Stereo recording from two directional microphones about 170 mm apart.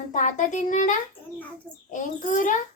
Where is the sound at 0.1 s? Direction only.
50° left (ahead or behind).